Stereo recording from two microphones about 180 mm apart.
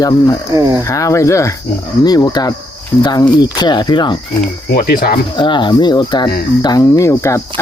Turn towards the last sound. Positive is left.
turn(degrees=15)  # may be behind; listen again after turning